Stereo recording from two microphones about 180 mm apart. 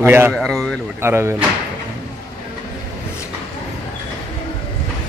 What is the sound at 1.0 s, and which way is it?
Speech, 15° right (ahead or behind).